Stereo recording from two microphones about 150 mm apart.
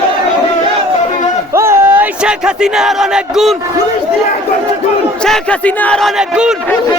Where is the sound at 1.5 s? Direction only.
15° right (ahead or behind).